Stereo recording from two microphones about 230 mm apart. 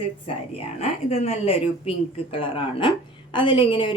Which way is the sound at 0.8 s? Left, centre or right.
Left.